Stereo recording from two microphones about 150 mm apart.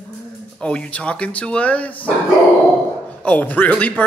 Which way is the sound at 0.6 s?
10° left (ahead or behind).